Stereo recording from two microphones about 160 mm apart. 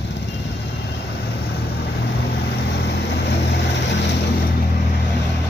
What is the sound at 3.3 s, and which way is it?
Vehicle, 90° left.